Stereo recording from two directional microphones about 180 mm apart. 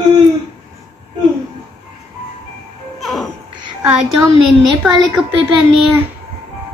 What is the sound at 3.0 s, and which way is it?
Music, centre (ahead or behind).